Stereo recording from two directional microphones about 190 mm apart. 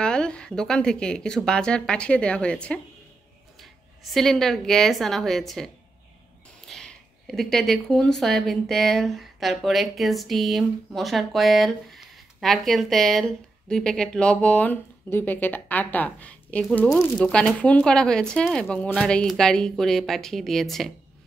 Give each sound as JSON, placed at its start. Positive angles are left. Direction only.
{"t": 0.0, "sound": "a woman's voice", "side_deg": 5}